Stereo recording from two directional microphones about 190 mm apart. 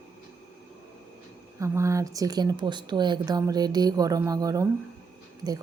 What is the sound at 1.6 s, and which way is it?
Speech, 15° right (ahead or behind).